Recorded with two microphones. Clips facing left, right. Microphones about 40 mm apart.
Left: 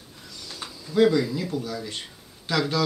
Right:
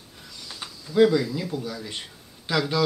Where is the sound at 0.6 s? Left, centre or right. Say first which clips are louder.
Left 1 dB; centre.